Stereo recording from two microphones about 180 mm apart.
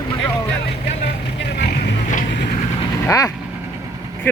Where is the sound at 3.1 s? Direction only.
15° left (ahead or behind).